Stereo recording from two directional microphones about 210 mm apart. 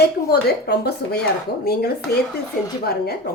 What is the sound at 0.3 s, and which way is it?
A woman's voice, 50° left (ahead or behind).